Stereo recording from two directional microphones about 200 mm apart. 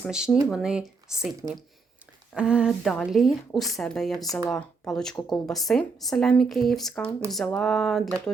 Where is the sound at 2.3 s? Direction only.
5° right (ahead or behind).